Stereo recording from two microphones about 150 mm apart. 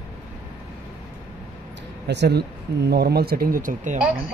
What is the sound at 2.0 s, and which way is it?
Speech, 90° right.